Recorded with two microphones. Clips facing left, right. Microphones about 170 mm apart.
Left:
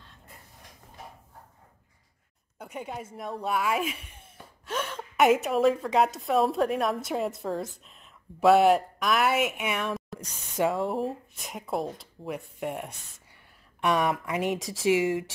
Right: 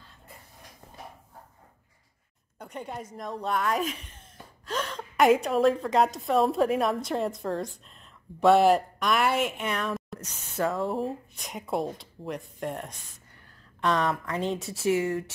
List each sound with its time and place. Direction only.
2.6 s speech: 5° left (ahead or behind)
10.2 s a sound: 15° left (ahead or behind)
10.8 s speech: centre (ahead or behind)
14.6 s speech: 90° left